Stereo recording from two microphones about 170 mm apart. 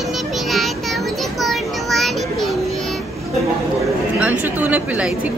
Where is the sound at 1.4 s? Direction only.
Centre (ahead or behind).